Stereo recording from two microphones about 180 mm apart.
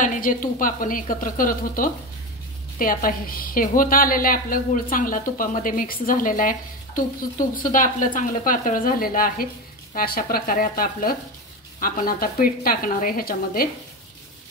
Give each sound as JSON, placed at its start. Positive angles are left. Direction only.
{"t": 0.0, "sound": "a woman's voice", "side_deg": 45}